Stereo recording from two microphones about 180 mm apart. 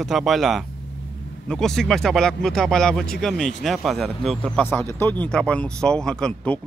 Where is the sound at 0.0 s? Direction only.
Centre (ahead or behind).